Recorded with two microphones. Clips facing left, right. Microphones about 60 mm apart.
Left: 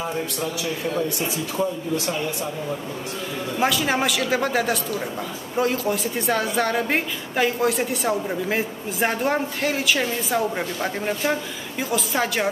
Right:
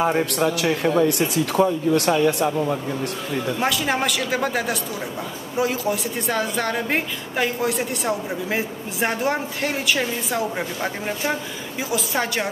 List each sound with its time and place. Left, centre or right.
0.0 s a man's voice: right
3.5 s speech: centre